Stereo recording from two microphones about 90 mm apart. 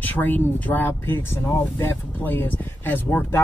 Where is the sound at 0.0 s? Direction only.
20° left (ahead or behind).